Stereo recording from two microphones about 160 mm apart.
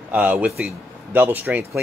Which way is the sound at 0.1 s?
10° right (ahead or behind).